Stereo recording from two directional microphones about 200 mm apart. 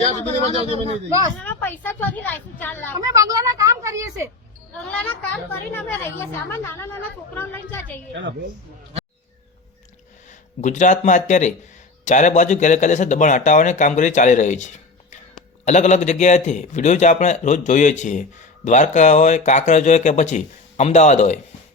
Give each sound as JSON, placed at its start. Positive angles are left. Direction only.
{"t": 0.0, "sound": "a man's voice", "side_deg": -30}
{"t": 1.5, "sound": "a woman's voice", "side_deg": 10}
{"t": 3.0, "sound": "a woman's voice", "side_deg": -15}
{"t": 4.8, "sound": "a woman's voice", "side_deg": 5}
{"t": 10.6, "sound": "a man's voice", "side_deg": 40}